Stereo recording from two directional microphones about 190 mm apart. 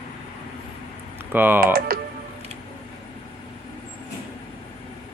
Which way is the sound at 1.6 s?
50° right (ahead or behind).